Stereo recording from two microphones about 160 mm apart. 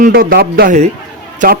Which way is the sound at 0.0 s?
65° right (ahead or behind).